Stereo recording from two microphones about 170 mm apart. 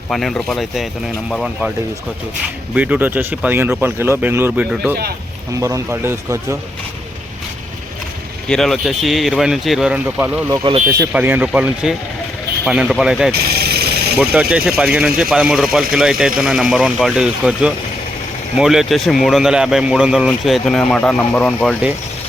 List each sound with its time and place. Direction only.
0.1 s speech: centre (ahead or behind)
2.7 s speech: 10° right (ahead or behind)
5.5 s speech: 20° right (ahead or behind)
8.4 s speech: centre (ahead or behind)
10.5 s speech: 25° right (ahead or behind)
10.8 s speech: 15° right (ahead or behind)
13.5 s vehicle: 65° right (ahead or behind)
14.5 s speech: 5° right (ahead or behind)